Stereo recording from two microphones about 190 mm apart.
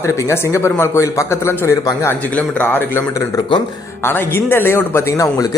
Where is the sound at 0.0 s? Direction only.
15° left (ahead or behind).